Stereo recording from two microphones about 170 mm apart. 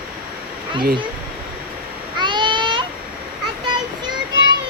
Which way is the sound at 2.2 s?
30° right (ahead or behind).